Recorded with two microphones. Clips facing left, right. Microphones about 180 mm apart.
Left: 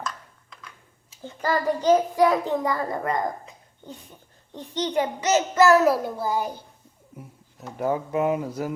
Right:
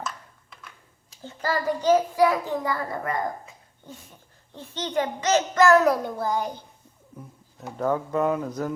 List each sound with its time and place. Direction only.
0.0 s a sound: 5° right (ahead or behind)
1.2 s a child's voice: 15° left (ahead or behind)
4.5 s a child's voice: 15° left (ahead or behind)
7.8 s a child's voice: 10° left (ahead or behind)